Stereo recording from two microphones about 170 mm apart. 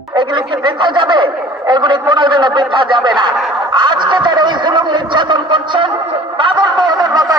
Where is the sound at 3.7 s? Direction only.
25° right (ahead or behind).